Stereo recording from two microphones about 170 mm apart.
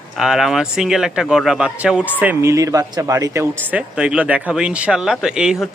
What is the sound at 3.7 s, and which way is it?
Speech, 5° right (ahead or behind).